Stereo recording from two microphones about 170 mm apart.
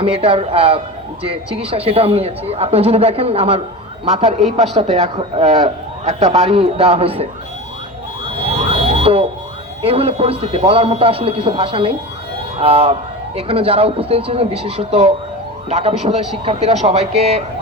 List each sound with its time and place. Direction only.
0.0 s speech: 35° right (ahead or behind)
8.4 s emergency vehicle: 35° right (ahead or behind)
9.8 s speech: 35° right (ahead or behind)